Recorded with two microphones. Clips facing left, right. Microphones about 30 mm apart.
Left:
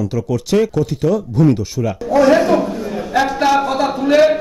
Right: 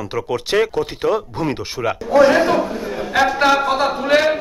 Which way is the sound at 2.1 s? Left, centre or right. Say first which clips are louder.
Left 1 dB; right.